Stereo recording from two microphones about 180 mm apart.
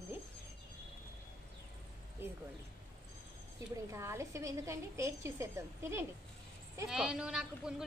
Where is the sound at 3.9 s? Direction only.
15° right (ahead or behind).